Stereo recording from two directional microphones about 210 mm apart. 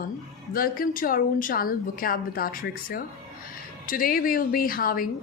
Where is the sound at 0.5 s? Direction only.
45° left (ahead or behind).